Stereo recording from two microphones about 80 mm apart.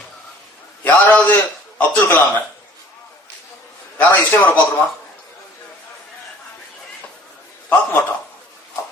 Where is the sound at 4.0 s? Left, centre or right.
Left.